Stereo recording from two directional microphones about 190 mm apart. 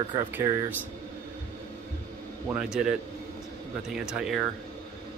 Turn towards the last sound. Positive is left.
turn(degrees=-5)  # may be behind; listen again after turning